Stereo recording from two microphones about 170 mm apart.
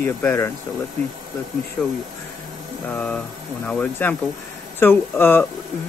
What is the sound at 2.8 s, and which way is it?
Speech, 10° left (ahead or behind).